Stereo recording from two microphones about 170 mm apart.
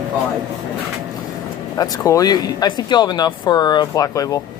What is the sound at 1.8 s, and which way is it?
Speech, 20° left (ahead or behind).